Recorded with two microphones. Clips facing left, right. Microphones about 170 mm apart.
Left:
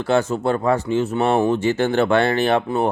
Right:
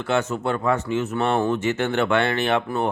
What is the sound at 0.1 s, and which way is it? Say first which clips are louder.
Speech: left 4 dB; 35° left (ahead or behind).